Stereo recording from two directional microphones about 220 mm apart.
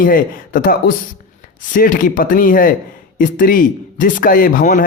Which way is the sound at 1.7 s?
35° left (ahead or behind).